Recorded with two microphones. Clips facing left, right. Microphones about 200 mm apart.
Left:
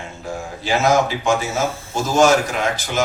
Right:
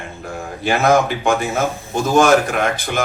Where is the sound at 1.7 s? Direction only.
15° right (ahead or behind).